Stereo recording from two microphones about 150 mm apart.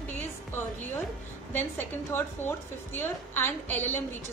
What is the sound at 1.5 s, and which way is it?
A woman's voice, 15° left (ahead or behind).